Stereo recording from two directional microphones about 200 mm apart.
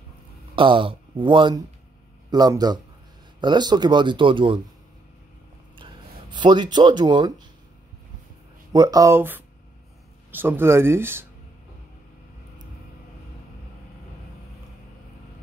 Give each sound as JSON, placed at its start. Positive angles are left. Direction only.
{"t": 0.6, "sound": "speech", "side_deg": -25}
{"t": 6.3, "sound": "speech", "side_deg": -20}
{"t": 8.7, "sound": "speech", "side_deg": -20}